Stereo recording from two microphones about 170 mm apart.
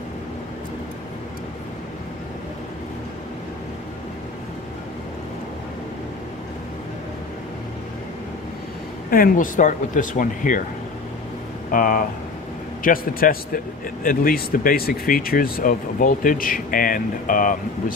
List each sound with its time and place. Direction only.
9.1 s speech: 55° left (ahead or behind)
11.7 s speech: 55° left (ahead or behind)